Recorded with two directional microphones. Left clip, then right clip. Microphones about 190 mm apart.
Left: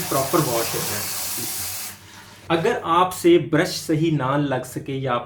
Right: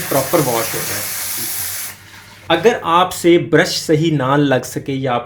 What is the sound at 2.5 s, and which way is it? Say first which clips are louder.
Speech: right 7 dB; 45° right (ahead or behind).